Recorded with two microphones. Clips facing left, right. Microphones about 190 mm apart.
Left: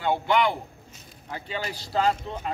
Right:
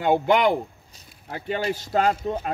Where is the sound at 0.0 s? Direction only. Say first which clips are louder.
Right 4 dB; 50° right (ahead or behind).